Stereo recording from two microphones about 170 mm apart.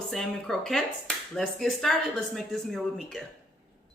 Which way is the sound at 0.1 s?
Centre (ahead or behind).